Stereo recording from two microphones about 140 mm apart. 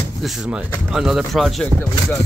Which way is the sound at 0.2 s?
Centre (ahead or behind).